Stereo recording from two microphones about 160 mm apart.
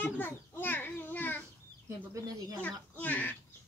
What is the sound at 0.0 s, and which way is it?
Children playing, 15° left (ahead or behind).